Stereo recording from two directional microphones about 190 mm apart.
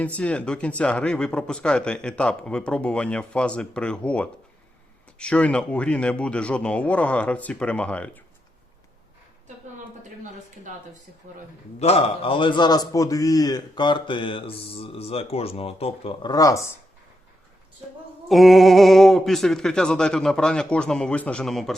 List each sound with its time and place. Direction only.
0.2 s speech: 5° left (ahead or behind)
11.8 s a man's voice: 30° left (ahead or behind); by 16.7 s 15° left (ahead or behind)
18.3 s speech: centre (ahead or behind)